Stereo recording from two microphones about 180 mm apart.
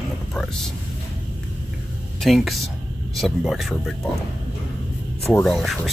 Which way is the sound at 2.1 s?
Centre (ahead or behind).